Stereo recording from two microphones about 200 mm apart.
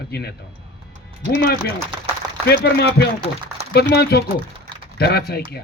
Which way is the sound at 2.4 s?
55° left (ahead or behind).